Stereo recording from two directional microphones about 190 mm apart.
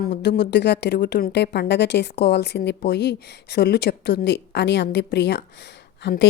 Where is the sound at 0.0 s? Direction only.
60° left (ahead or behind).